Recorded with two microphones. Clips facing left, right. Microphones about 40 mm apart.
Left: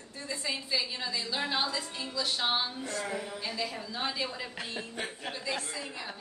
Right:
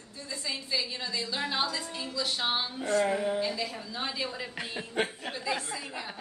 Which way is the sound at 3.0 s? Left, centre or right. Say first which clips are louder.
Right 9 dB; right.